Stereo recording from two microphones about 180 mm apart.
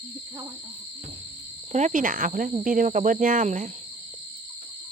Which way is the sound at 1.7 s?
40° right (ahead or behind).